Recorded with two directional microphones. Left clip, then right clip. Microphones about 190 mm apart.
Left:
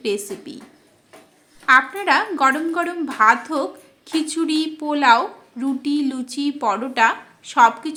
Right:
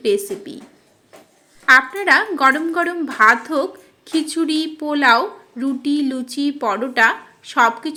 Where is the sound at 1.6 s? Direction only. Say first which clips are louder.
Right 2 dB; 10° right (ahead or behind).